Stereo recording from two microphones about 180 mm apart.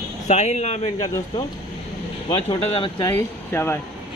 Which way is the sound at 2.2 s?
25° left (ahead or behind).